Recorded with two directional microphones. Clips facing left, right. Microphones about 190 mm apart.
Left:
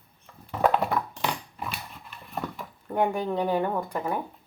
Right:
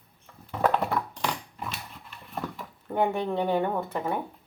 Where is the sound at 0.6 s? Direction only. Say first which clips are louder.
Left 1 dB; 15° left (ahead or behind).